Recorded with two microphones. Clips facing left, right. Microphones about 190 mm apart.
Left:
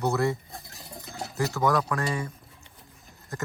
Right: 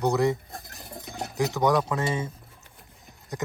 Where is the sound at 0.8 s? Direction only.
20° right (ahead or behind).